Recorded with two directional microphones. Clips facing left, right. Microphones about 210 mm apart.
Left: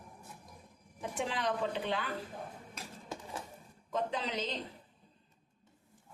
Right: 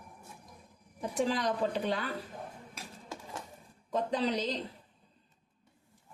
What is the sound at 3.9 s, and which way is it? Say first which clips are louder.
Speech: right 5 dB; 35° right (ahead or behind).